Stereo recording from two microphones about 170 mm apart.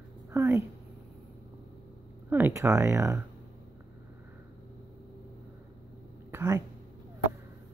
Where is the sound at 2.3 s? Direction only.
15° right (ahead or behind).